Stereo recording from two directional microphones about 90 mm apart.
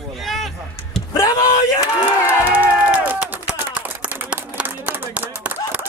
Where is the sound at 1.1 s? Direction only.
40° left (ahead or behind).